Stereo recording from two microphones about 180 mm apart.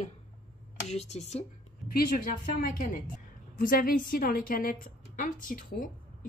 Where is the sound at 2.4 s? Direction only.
50° left (ahead or behind).